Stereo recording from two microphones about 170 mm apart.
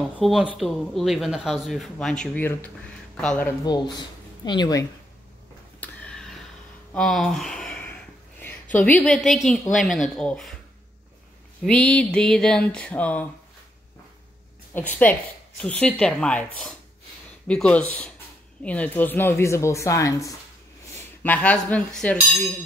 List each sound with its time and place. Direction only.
0.2 s speech: 5° right (ahead or behind)
3.6 s a woman's voice: 25° left (ahead or behind)
5.8 s a sound: 5° left (ahead or behind)
8.7 s speech: 10° left (ahead or behind)
11.6 s speech: 5° left (ahead or behind)
14.7 s speech: 10° left (ahead or behind)